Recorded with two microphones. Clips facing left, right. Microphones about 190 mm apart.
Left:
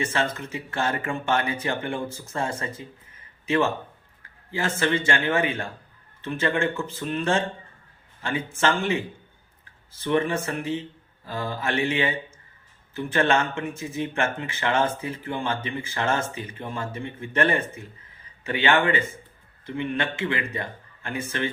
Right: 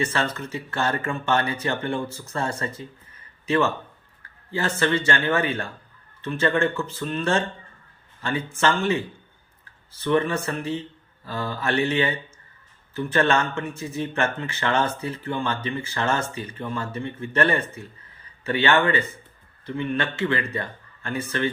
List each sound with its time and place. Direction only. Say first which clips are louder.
0.0 s a man's voice: right 1 dB; 15° left (ahead or behind)
20.6 s a sound: right 1 dB; 15° left (ahead or behind)
21.2 s a man's voice: right 3 dB; 15° left (ahead or behind)